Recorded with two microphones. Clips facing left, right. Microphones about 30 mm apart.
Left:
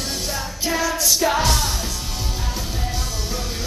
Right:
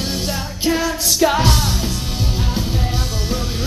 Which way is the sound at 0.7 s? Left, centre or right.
Centre.